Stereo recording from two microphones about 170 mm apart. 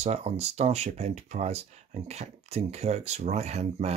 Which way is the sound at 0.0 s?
40° right (ahead or behind).